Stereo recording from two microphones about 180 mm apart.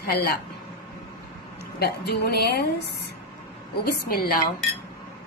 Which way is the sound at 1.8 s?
65° left (ahead or behind).